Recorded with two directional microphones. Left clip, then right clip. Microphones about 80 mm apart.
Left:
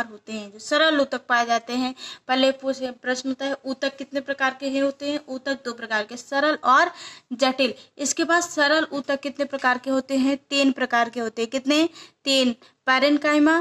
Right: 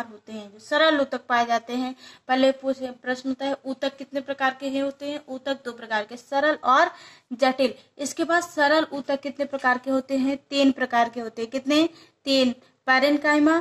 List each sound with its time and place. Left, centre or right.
0.0 s a woman's voice: left
9.6 s speech: left